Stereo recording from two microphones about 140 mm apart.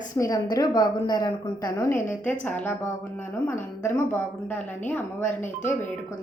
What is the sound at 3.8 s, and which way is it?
A woman's voice, 15° left (ahead or behind).